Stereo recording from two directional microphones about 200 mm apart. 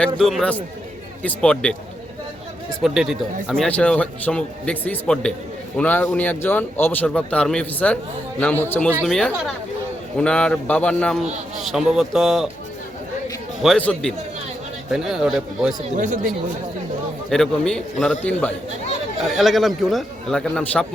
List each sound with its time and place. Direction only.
0.0 s a man's voice: centre (ahead or behind)
2.8 s a man's voice: centre (ahead or behind)
13.6 s a man's voice: 5° left (ahead or behind)
16.0 s speech: 40° right (ahead or behind)
17.2 s a man's voice: centre (ahead or behind)